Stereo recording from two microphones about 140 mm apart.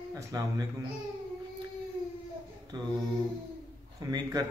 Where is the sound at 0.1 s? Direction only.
25° right (ahead or behind).